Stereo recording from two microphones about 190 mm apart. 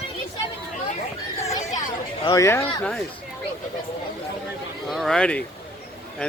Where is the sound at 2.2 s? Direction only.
15° left (ahead or behind).